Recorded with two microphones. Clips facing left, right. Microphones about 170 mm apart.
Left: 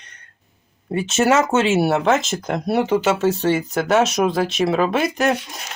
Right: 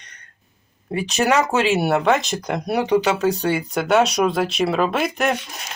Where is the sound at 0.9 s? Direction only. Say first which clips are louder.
Left 2 dB; centre (ahead or behind).